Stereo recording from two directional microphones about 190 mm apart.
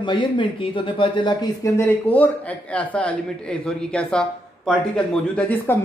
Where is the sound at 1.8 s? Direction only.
10° left (ahead or behind).